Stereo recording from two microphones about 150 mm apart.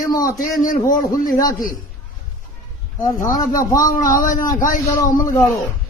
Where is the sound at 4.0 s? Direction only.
60° left (ahead or behind).